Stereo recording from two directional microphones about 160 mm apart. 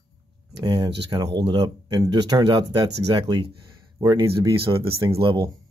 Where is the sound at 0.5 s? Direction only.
30° right (ahead or behind).